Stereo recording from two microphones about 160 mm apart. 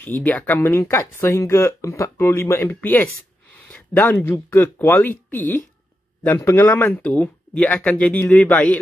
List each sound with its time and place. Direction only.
0.0 s speech: 10° left (ahead or behind)